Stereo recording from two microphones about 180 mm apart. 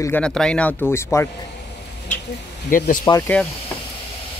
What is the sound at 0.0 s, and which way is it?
Speech, 10° left (ahead or behind).